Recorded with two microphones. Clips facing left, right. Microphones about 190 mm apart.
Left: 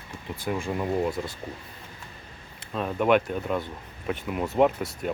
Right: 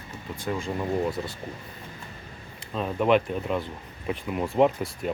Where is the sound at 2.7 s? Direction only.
Centre (ahead or behind).